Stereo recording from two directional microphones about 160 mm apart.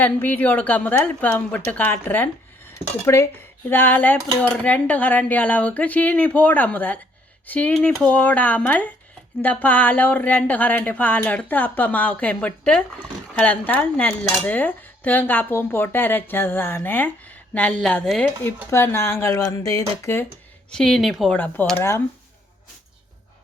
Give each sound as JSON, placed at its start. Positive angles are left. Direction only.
{"t": 0.0, "sound": "speech", "side_deg": 10}
{"t": 18.7, "sound": "speech", "side_deg": 15}
{"t": 20.7, "sound": "speech", "side_deg": 5}